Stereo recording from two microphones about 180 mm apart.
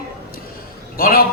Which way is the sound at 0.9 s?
55° left (ahead or behind).